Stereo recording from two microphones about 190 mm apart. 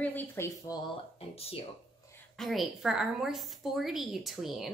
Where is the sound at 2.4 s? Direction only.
Centre (ahead or behind).